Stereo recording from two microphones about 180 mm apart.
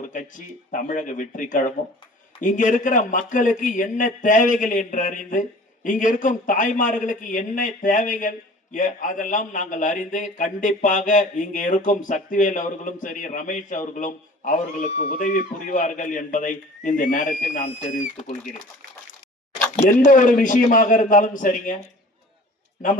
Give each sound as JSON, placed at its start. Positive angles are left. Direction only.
{"t": 0.1, "sound": "a man's voice", "side_deg": 45}
{"t": 19.7, "sound": "a man's voice", "side_deg": 45}